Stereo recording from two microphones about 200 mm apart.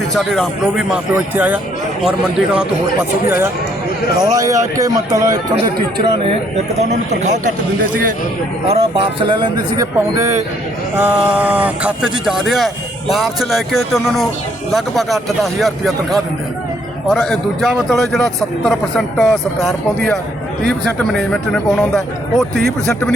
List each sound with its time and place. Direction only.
0.1 s speech: centre (ahead or behind)
3.2 s speech: 10° right (ahead or behind)
6.7 s speech: 35° right (ahead or behind)
8.6 s a man's voice: 30° right (ahead or behind); by 16.0 s centre (ahead or behind)
17.1 s speech: centre (ahead or behind)